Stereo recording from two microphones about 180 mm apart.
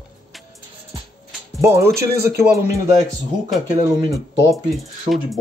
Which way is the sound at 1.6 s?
15° right (ahead or behind).